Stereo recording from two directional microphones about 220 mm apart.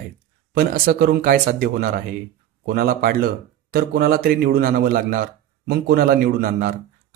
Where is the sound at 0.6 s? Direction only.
45° right (ahead or behind).